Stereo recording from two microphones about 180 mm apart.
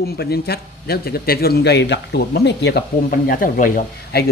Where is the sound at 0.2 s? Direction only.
60° left (ahead or behind).